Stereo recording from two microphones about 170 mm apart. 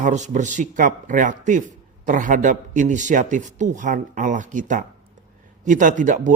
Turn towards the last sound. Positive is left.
turn(degrees=-50)  # may be behind; listen again after turning